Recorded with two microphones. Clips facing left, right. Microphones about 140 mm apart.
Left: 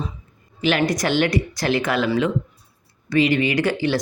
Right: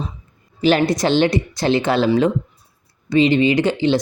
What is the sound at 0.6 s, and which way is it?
Speech, 35° right (ahead or behind).